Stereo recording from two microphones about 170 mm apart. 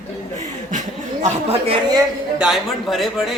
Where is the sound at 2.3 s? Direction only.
5° right (ahead or behind).